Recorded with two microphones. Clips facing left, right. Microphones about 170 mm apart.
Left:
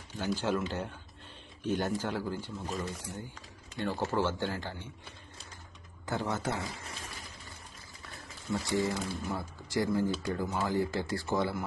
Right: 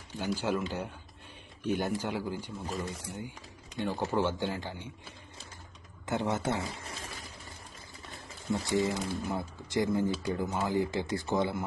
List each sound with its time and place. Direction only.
0.2 s a man's voice: 10° right (ahead or behind)
2.7 s speech: centre (ahead or behind)
3.7 s a man's voice: 15° right (ahead or behind)
6.0 s speech: 25° right (ahead or behind)
8.5 s speech: 20° right (ahead or behind)